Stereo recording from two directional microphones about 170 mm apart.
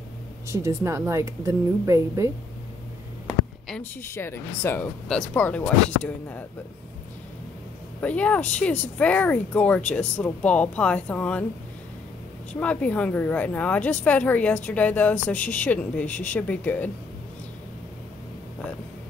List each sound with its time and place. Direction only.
0.5 s speech: 20° right (ahead or behind)
3.3 s a woman's voice: 5° left (ahead or behind)
8.0 s a woman's voice: 10° left (ahead or behind)
12.5 s a woman's voice: 10° left (ahead or behind)